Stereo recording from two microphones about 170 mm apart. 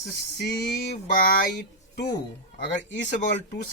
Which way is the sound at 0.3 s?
80° left.